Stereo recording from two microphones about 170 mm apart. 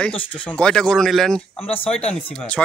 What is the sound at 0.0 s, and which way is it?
Speech, 5° left (ahead or behind).